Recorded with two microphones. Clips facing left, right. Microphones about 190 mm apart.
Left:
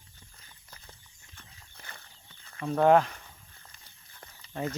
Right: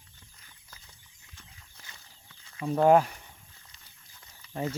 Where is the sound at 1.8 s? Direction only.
60° left (ahead or behind).